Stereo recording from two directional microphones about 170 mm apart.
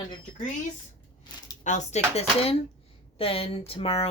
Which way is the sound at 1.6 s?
45° left (ahead or behind).